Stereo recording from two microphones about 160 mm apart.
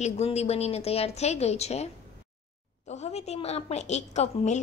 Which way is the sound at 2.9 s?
40° left (ahead or behind).